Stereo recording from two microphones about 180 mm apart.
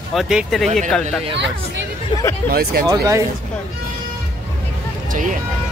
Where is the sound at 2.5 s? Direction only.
55° right (ahead or behind).